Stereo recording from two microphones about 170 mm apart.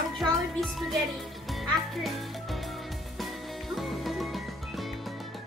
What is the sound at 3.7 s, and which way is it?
Music, centre (ahead or behind).